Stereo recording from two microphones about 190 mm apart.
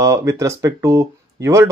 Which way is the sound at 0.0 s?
15° right (ahead or behind).